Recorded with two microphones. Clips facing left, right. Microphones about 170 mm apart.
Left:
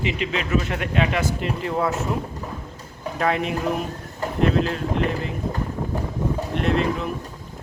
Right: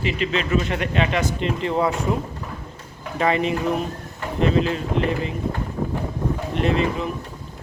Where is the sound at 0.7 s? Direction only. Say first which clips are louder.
Right 1 dB; 5° left (ahead or behind).